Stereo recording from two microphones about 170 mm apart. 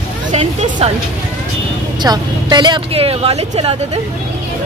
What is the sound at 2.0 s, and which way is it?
Speech, 25° right (ahead or behind).